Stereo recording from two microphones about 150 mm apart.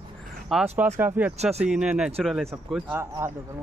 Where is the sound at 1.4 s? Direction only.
45° right (ahead or behind).